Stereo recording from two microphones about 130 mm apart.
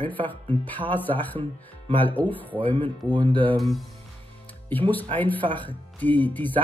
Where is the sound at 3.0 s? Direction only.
30° right (ahead or behind).